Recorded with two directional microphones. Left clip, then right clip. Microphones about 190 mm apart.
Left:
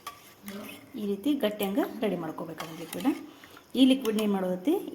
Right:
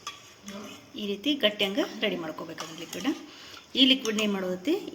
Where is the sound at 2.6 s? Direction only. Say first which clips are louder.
Even; 25° left (ahead or behind).